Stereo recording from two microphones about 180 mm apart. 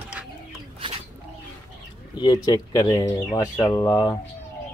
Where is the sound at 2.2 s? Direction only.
25° left (ahead or behind).